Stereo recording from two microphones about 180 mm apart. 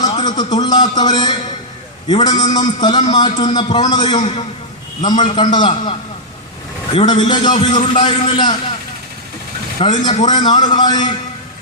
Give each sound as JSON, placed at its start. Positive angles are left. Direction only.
{"t": 0.0, "sound": "a sound", "side_deg": 25}
{"t": 2.0, "sound": "a man's voice", "side_deg": 25}
{"t": 7.0, "sound": "a man's voice", "side_deg": 25}
{"t": 9.8, "sound": "a man's voice", "side_deg": 30}